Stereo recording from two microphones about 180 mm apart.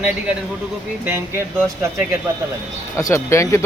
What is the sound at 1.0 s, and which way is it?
Speech, 15° right (ahead or behind).